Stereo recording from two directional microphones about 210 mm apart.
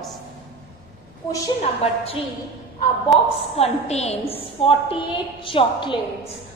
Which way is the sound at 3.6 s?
30° left (ahead or behind).